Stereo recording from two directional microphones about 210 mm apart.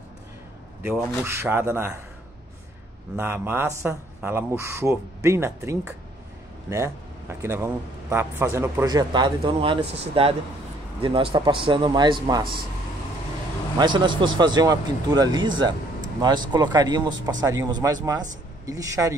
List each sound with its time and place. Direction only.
0.8 s a man's voice: 10° right (ahead or behind)
3.2 s a man's voice: 10° right (ahead or behind)
13.7 s a man's voice: 20° right (ahead or behind)